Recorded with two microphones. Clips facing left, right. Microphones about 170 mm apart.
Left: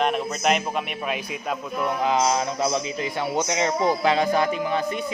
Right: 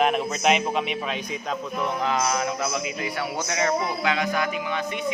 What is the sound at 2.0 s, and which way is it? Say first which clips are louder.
A man's voice: left 4 dB; 20° left (ahead or behind).